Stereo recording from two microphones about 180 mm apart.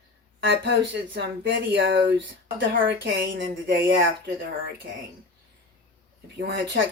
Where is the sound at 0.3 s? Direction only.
75° right (ahead or behind); by 2.8 s 90° right.